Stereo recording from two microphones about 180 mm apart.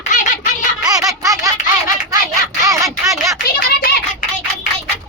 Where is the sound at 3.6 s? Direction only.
55° left (ahead or behind).